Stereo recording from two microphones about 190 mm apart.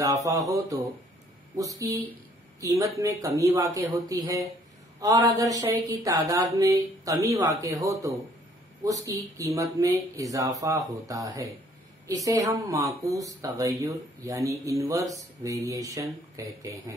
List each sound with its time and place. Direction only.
0.0 s speech: 15° right (ahead or behind)